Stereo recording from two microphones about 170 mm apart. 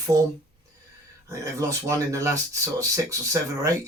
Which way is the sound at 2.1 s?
20° right (ahead or behind).